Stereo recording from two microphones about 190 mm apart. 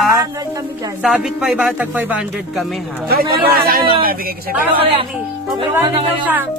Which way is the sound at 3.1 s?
50° right (ahead or behind).